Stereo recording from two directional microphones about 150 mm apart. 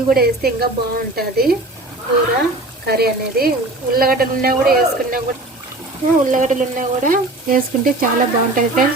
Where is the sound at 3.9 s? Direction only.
80° right.